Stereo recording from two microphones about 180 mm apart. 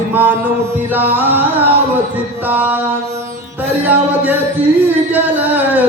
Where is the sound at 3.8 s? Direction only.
10° right (ahead or behind).